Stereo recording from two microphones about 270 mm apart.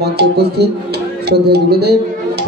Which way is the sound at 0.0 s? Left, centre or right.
Right.